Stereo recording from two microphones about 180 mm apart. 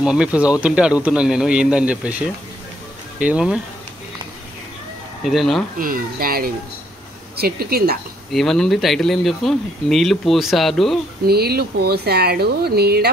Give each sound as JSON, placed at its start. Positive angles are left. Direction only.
{"t": 0.0, "sound": "speech", "side_deg": -5}
{"t": 5.2, "sound": "speech", "side_deg": 0}
{"t": 5.8, "sound": "speech", "side_deg": -50}
{"t": 8.3, "sound": "speech", "side_deg": 0}
{"t": 11.2, "sound": "speech", "side_deg": -60}